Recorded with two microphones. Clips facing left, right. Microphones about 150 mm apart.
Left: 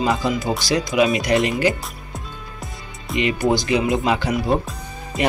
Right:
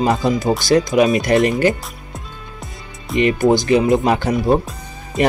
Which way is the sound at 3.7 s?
45° right (ahead or behind).